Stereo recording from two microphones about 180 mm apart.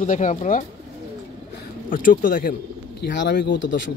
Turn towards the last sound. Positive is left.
turn(degrees=80)